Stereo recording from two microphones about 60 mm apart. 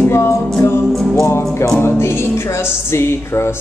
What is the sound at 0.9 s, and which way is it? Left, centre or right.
Music, centre.